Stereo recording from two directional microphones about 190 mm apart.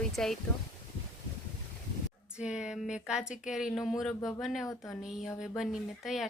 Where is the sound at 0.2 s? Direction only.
5° left (ahead or behind).